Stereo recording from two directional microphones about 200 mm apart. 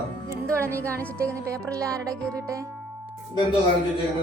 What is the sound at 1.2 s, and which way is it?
Music, 15° right (ahead or behind).